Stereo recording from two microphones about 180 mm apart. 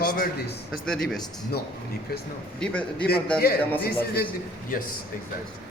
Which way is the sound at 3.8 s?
60° left (ahead or behind).